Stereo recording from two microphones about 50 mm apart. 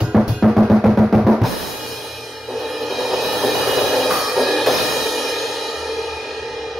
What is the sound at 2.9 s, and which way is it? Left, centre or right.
Music, centre.